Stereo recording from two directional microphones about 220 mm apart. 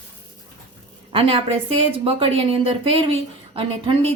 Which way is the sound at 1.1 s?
25° right (ahead or behind).